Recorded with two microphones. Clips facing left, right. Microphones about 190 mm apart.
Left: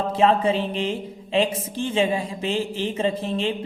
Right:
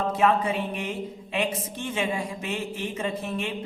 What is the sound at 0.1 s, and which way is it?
Speech, 30° left (ahead or behind).